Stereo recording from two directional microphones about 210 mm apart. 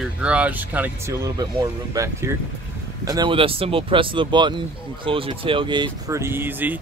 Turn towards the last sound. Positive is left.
turn(degrees=-10)  # may be behind; listen again after turning